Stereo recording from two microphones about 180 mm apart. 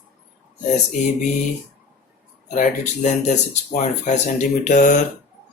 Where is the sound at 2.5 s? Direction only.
45° left (ahead or behind).